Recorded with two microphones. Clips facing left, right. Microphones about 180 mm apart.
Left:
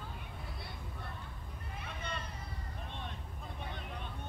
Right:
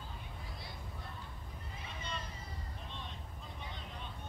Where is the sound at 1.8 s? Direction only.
60° left (ahead or behind).